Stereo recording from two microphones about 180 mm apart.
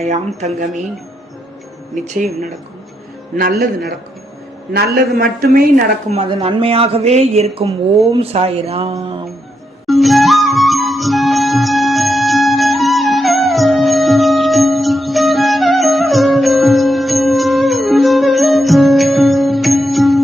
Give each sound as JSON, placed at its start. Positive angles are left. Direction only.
{"t": 0.3, "sound": "speech", "side_deg": -40}
{"t": 2.0, "sound": "speech", "side_deg": -45}
{"t": 3.3, "sound": "a man's voice", "side_deg": -55}
{"t": 6.1, "sound": "speech", "side_deg": -30}
{"t": 9.8, "sound": "music", "side_deg": 0}